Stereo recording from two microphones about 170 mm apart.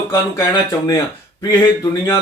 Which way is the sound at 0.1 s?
20° left (ahead or behind).